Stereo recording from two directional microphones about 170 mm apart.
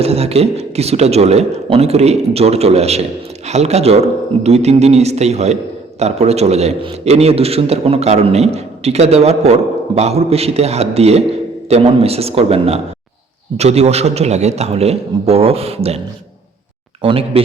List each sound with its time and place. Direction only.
0.0 s speech: 35° right (ahead or behind)
17.0 s speech: 30° right (ahead or behind)